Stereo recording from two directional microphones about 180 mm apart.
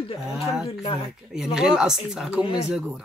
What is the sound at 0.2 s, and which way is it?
Speech, centre (ahead or behind).